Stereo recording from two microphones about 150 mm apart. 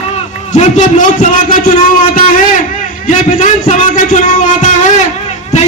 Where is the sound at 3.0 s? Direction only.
60° left (ahead or behind).